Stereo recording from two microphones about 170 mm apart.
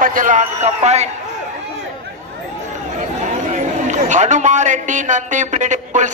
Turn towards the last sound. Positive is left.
turn(degrees=-45)  # may be behind; listen again after turning